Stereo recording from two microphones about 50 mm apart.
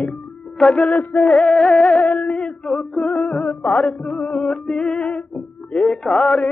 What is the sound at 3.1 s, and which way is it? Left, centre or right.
Music, left.